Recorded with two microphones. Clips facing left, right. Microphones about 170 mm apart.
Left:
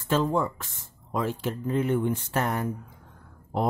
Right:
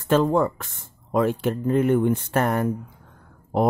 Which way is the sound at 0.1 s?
60° right (ahead or behind).